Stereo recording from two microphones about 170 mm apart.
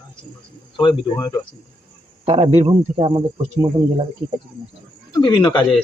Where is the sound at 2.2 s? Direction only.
35° right (ahead or behind).